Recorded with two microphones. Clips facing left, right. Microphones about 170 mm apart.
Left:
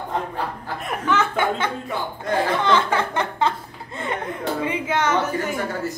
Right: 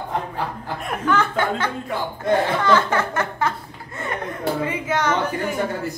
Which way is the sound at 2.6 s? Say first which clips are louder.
Right 1 dB; 20° left (ahead or behind).